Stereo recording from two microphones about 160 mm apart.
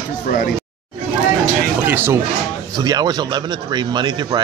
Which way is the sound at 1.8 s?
15° right (ahead or behind).